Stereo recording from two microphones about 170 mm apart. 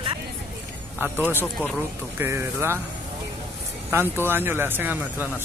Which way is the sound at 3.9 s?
15° right (ahead or behind).